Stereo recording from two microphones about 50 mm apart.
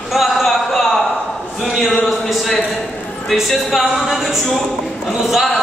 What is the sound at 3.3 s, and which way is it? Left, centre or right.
Speech, centre.